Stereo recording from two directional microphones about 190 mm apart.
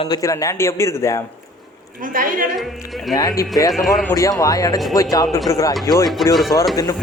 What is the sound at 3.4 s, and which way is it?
A man's voice, 20° left (ahead or behind).